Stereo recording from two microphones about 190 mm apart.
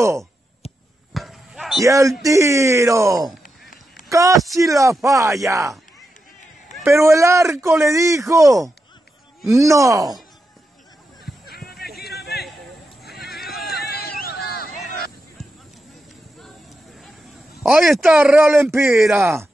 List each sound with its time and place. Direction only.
1.1 s basketball bounce: centre (ahead or behind)
1.9 s speech: 15° right (ahead or behind)
6.8 s speech: 15° right (ahead or behind)
11.4 s basketball bounce: 55° left (ahead or behind)
12.2 s a sound: 55° left (ahead or behind)
13.0 s horse: 55° left (ahead or behind)
13.5 s run: 55° left (ahead or behind)
17.6 s speech: centre (ahead or behind)